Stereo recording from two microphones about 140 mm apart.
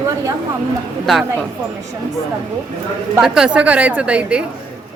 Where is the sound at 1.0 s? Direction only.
Centre (ahead or behind).